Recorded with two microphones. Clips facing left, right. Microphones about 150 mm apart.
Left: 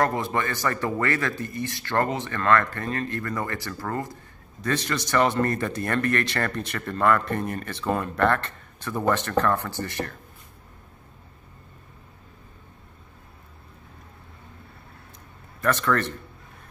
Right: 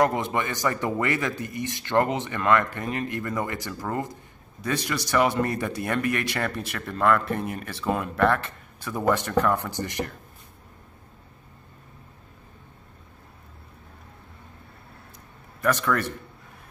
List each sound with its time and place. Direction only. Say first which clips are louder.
0.0 s speech: right 1 dB; 20° right (ahead or behind)
15.6 s speech: left 1 dB; 10° right (ahead or behind)